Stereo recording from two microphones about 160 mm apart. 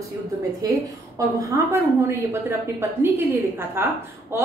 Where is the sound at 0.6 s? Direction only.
20° right (ahead or behind).